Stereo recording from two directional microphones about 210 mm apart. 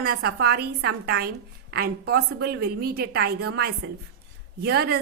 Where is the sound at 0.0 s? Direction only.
45° right (ahead or behind).